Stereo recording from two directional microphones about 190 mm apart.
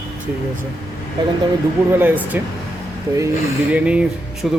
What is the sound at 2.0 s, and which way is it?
Speech, 10° right (ahead or behind).